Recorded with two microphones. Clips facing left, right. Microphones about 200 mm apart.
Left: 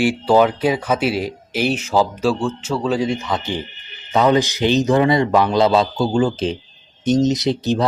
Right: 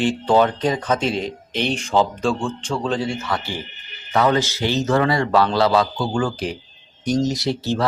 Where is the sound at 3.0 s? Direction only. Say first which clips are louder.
Left 3 dB; 20° left (ahead or behind).